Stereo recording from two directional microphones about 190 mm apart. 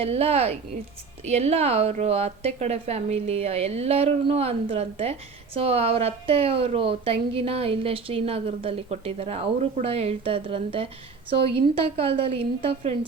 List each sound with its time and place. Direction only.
0.0 s a woman's voice: 30° right (ahead or behind)